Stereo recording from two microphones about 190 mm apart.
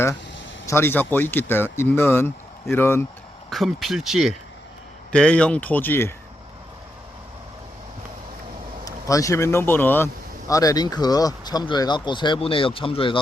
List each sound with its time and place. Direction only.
0.7 s speech: 10° left (ahead or behind)
3.5 s speech: centre (ahead or behind)
8.8 s speech: 15° left (ahead or behind)